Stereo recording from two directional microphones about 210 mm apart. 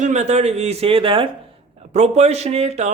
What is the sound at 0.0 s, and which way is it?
A man's voice, 35° right (ahead or behind).